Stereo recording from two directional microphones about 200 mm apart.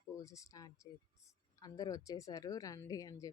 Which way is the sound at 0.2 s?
15° left (ahead or behind).